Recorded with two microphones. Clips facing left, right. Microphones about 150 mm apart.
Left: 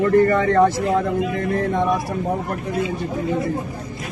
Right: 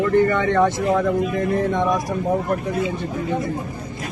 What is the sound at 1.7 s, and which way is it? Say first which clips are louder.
Speech: even; 30° left (ahead or behind).